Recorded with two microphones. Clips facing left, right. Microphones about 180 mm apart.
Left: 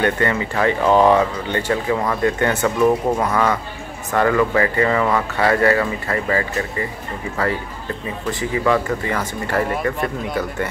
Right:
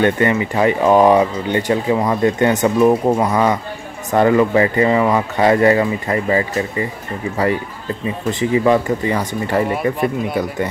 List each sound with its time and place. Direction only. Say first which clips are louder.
0.0 s speech: right 4 dB; 20° right (ahead or behind)
8.3 s speech: right 4 dB; 20° right (ahead or behind)